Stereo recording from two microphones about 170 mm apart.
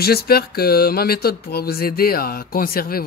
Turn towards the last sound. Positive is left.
turn(degrees=60)  # may be behind; listen again after turning